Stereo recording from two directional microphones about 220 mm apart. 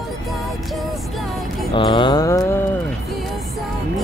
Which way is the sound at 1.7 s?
25° left (ahead or behind).